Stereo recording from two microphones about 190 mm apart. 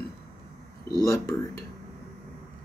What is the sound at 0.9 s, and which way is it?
Speech, 20° left (ahead or behind).